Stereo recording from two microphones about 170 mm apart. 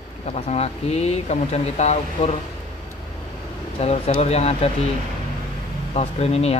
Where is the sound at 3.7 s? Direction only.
35° left (ahead or behind).